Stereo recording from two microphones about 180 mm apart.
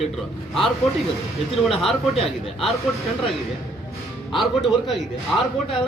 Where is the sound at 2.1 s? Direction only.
30° left (ahead or behind).